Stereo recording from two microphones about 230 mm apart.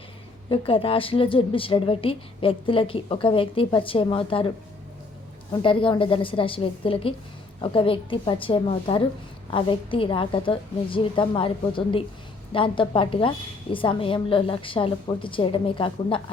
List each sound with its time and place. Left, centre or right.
0.5 s a woman's voice: left
5.6 s a woman's voice: left